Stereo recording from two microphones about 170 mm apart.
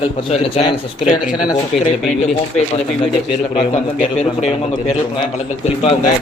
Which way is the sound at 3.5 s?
50° left (ahead or behind).